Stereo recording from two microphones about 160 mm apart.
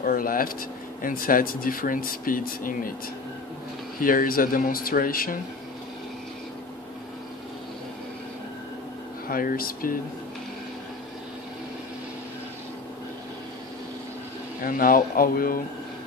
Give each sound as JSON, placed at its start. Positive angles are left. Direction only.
{"t": 0.0, "sound": "speech", "side_deg": 60}
{"t": 4.0, "sound": "speech", "side_deg": 60}
{"t": 9.3, "sound": "speech", "side_deg": 65}
{"t": 14.6, "sound": "speech", "side_deg": 65}